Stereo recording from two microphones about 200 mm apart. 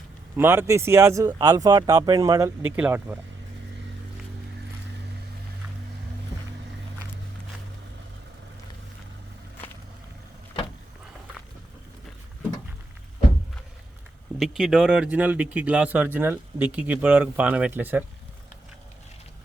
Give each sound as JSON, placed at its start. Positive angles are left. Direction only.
{"t": 0.3, "sound": "speech", "side_deg": -10}
{"t": 14.3, "sound": "speech", "side_deg": 0}